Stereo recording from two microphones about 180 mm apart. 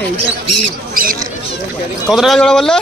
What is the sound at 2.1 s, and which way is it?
Speech, centre (ahead or behind).